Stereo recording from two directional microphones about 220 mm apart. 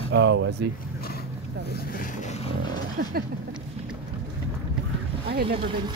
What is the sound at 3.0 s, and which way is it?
Speech, 50° right (ahead or behind).